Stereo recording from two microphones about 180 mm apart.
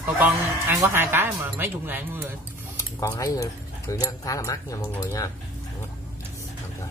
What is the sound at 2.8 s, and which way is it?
Speech, 20° left (ahead or behind).